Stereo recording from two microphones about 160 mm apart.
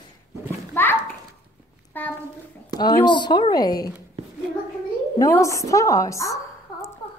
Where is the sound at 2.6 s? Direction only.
25° left (ahead or behind).